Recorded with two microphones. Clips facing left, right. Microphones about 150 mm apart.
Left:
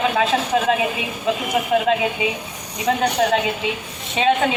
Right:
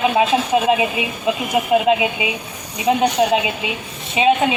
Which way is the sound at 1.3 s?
10° right (ahead or behind).